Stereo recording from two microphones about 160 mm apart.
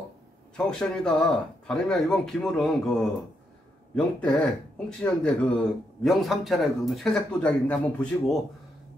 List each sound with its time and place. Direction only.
0.6 s a man's voice: 5° left (ahead or behind)